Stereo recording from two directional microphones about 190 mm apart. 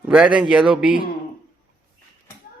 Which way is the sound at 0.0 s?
5° right (ahead or behind).